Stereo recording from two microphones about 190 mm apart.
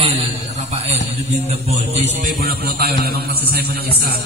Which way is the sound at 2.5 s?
55° right (ahead or behind).